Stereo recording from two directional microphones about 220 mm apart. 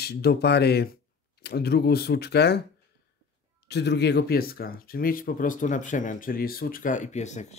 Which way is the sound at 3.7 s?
50° left (ahead or behind).